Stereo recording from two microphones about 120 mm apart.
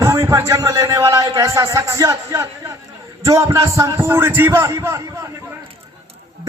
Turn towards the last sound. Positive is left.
turn(degrees=-25)  # may be behind; listen again after turning